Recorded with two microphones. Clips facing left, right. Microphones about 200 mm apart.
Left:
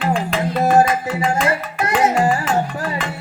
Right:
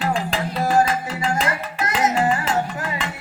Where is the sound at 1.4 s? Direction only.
30° left (ahead or behind).